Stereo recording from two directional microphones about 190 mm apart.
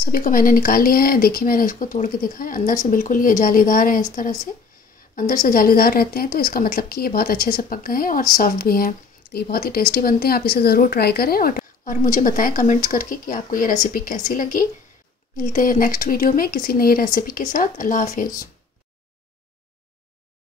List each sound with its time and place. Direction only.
0.0 s speech: 50° left (ahead or behind)